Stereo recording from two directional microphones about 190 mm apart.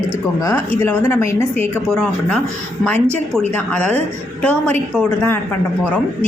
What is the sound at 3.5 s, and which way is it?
Speech, 5° left (ahead or behind).